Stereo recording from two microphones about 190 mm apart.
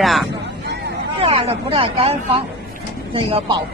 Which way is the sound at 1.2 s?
30° right (ahead or behind).